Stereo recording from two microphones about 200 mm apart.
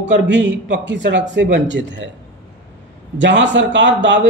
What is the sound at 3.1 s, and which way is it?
A man's voice, 65° right (ahead or behind).